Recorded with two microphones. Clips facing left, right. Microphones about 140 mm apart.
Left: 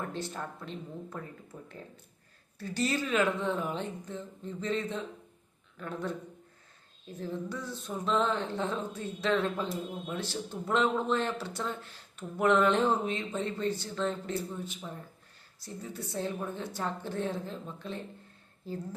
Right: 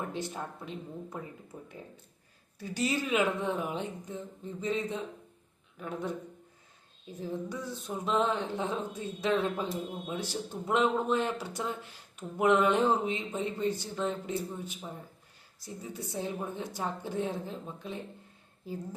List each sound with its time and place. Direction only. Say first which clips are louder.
0.0 s speech: right 1 dB; 15° right (ahead or behind)